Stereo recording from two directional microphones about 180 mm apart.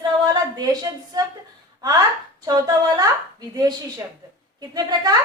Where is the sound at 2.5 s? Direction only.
20° right (ahead or behind).